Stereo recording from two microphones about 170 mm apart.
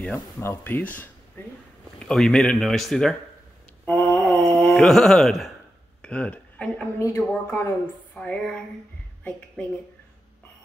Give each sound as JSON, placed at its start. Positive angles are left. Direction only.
{"t": 0.4, "sound": "a woman's voice", "side_deg": 15}
{"t": 3.8, "sound": "mantra", "side_deg": 10}
{"t": 4.7, "sound": "a woman's voice", "side_deg": 5}